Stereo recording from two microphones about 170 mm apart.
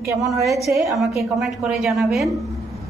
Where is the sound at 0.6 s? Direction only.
Centre (ahead or behind).